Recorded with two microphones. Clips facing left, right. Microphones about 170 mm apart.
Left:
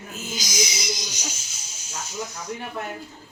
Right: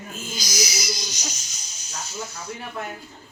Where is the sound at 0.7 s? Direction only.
25° left (ahead or behind).